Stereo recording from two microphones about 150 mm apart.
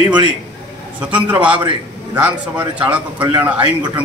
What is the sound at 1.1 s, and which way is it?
Speech, 10° right (ahead or behind).